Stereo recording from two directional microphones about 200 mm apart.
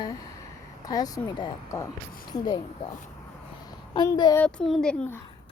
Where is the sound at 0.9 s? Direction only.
20° left (ahead or behind).